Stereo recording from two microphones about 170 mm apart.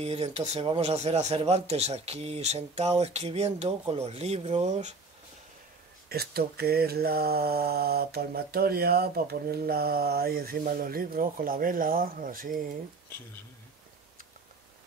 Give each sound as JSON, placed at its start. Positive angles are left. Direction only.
{"t": 0.0, "sound": "speech", "side_deg": -35}
{"t": 6.0, "sound": "mantra", "side_deg": -65}